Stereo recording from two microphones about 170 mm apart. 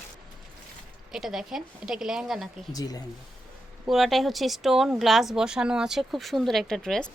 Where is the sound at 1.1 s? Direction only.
Centre (ahead or behind).